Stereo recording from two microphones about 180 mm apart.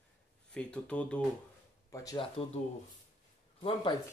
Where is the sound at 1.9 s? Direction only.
15° left (ahead or behind).